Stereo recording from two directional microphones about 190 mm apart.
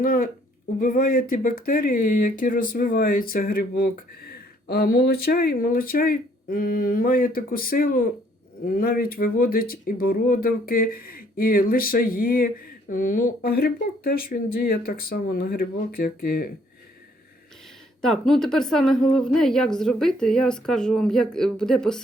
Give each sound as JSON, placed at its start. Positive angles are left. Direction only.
{"t": 0.0, "sound": "speech", "side_deg": 50}
{"t": 18.0, "sound": "a woman's voice", "side_deg": 0}